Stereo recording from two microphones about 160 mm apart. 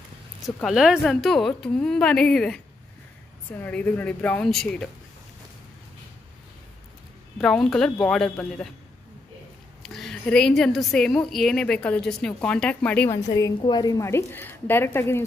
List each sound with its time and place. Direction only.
0.7 s a woman's voice: centre (ahead or behind)
3.6 s a woman's voice: 10° left (ahead or behind)
7.3 s a woman's voice: centre (ahead or behind)
9.8 s a woman's voice: centre (ahead or behind)
13.1 s a woman's voice: 25° left (ahead or behind)